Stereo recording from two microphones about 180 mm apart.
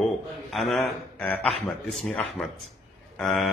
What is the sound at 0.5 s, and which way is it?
A man's voice, centre (ahead or behind).